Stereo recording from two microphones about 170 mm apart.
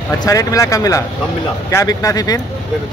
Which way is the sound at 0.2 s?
20° left (ahead or behind).